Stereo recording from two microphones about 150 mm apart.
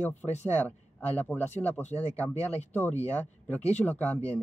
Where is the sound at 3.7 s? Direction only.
10° left (ahead or behind).